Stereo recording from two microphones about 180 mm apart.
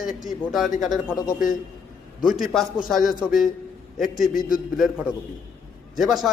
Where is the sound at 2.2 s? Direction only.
Centre (ahead or behind).